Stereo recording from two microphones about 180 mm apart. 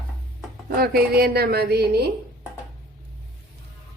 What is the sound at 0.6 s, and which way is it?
A woman's voice, 55° right (ahead or behind).